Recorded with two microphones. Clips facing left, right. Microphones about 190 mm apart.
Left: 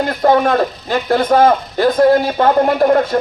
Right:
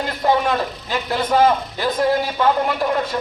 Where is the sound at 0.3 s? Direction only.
50° left (ahead or behind).